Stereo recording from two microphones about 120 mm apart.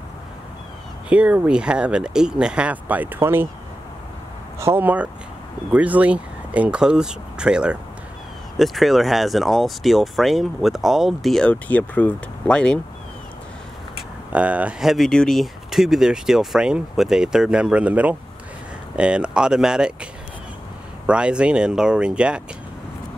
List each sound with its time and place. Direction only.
1.0 s speech: 10° right (ahead or behind)
4.6 s speech: 20° right (ahead or behind); by 12.8 s 10° left (ahead or behind)
14.3 s speech: 10° right (ahead or behind)
21.1 s speech: 10° right (ahead or behind)